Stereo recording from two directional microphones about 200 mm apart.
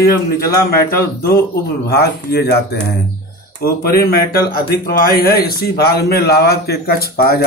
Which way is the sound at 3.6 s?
50° left (ahead or behind).